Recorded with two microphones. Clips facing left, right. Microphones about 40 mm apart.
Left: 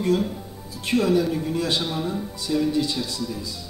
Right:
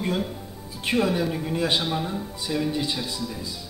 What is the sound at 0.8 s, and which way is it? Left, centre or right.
Speech, centre.